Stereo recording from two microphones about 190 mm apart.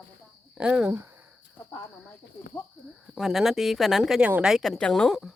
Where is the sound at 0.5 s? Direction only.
5° right (ahead or behind).